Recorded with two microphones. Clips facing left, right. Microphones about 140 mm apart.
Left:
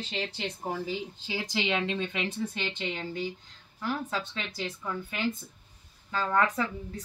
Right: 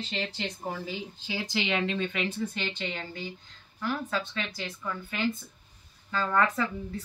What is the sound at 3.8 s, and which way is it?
Speech, 20° left (ahead or behind).